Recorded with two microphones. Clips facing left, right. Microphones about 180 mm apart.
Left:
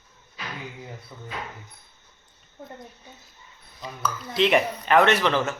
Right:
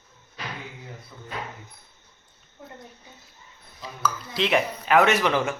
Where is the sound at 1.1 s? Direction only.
20° left (ahead or behind).